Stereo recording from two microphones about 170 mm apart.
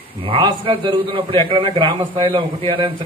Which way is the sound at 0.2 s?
30° right (ahead or behind).